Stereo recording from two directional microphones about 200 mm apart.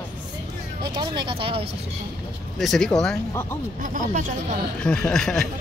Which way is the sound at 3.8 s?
40° right (ahead or behind).